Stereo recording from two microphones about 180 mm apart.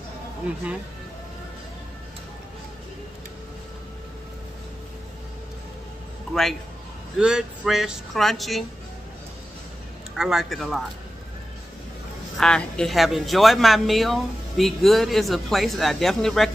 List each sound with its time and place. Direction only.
7.2 s speech: 5° right (ahead or behind)
10.1 s speech: 5° right (ahead or behind)
12.4 s speech: 5° left (ahead or behind)